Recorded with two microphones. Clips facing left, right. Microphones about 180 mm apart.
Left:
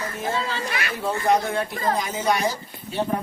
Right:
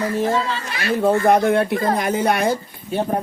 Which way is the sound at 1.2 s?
60° right (ahead or behind).